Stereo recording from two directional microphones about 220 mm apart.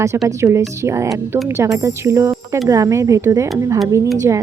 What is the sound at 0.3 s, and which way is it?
Speech, 15° right (ahead or behind).